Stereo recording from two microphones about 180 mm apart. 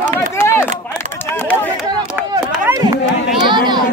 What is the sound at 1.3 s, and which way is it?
Chatter, 10° left (ahead or behind).